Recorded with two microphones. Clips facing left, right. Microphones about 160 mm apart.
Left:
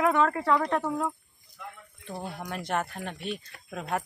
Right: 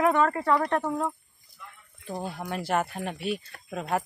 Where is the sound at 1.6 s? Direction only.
80° left.